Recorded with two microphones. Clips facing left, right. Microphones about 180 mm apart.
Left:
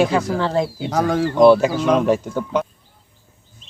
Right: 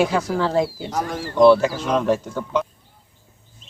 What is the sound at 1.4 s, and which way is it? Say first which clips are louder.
Speech: left 1 dB; 15° left (ahead or behind).